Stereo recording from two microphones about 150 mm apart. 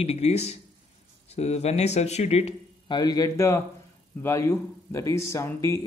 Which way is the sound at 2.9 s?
25° left (ahead or behind).